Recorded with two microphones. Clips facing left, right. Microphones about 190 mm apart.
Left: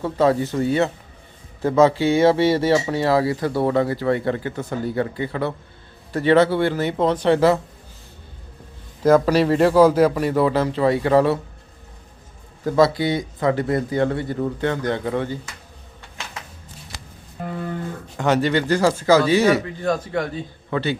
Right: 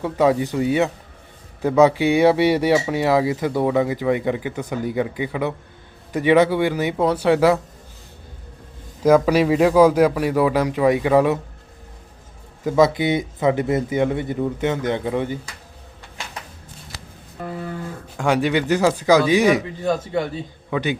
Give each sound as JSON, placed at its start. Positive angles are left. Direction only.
{"t": 0.0, "sound": "speech", "side_deg": -15}
{"t": 9.0, "sound": "speech", "side_deg": -10}
{"t": 12.6, "sound": "speech", "side_deg": -15}
{"t": 18.2, "sound": "a man's voice", "side_deg": -10}